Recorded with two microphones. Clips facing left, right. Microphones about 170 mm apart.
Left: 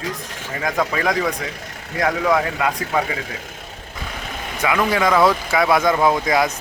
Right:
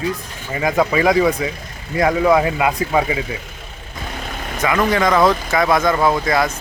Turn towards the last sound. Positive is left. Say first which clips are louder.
# right 1 dB
turn(degrees=15)  # may be behind; listen again after turning